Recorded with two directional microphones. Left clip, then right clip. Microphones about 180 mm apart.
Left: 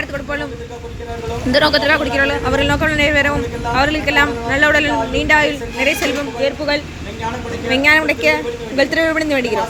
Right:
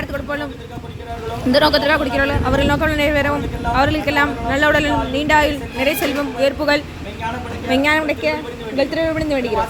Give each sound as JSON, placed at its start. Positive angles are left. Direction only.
{"t": 0.1, "sound": "speech", "side_deg": -10}
{"t": 1.5, "sound": "speech", "side_deg": -15}
{"t": 6.4, "sound": "speech", "side_deg": -30}
{"t": 7.7, "sound": "a woman's voice", "side_deg": -15}